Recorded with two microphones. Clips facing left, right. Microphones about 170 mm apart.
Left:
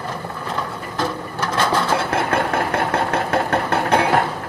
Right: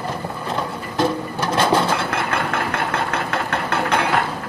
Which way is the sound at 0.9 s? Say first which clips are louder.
Right 5 dB; 20° right (ahead or behind).